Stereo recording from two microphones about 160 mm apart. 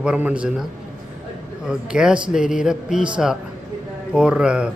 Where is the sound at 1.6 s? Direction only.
5° right (ahead or behind).